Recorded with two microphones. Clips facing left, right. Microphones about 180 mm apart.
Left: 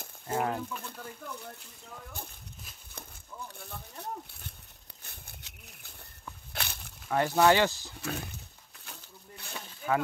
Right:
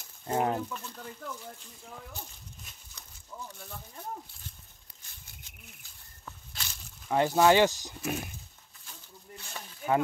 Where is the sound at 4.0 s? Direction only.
65° left (ahead or behind).